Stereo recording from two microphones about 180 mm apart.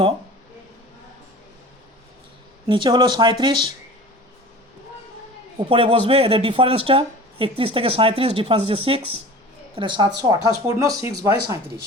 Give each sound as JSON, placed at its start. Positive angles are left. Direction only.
{"t": 2.6, "sound": "speech", "side_deg": -25}
{"t": 5.6, "sound": "speech", "side_deg": -30}